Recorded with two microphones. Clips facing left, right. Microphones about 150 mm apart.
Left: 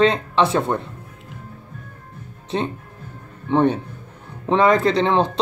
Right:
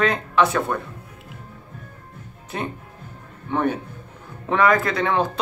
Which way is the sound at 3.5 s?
25° left (ahead or behind).